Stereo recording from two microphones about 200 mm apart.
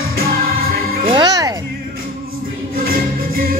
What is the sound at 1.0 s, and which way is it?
Speech, 20° right (ahead or behind).